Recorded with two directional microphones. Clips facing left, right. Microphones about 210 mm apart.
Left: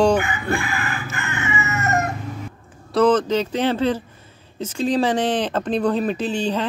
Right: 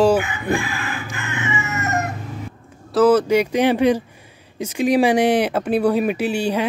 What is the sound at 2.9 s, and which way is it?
Speech, 10° right (ahead or behind).